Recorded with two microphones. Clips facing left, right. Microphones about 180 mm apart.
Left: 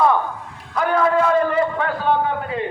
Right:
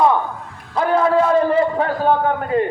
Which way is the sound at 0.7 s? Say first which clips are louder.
Right 2 dB; 30° right (ahead or behind).